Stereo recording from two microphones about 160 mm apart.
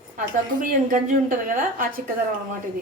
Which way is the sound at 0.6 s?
60° right (ahead or behind).